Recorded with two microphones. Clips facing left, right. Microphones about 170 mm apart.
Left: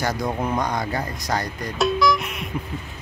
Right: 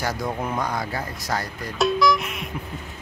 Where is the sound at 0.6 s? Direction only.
5° right (ahead or behind).